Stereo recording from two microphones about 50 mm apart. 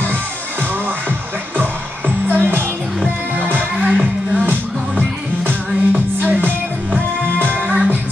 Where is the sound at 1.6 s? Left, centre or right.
Right.